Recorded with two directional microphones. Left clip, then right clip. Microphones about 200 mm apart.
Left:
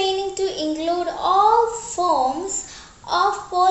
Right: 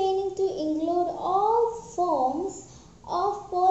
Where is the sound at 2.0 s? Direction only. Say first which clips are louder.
Left 6 dB; 30° left (ahead or behind).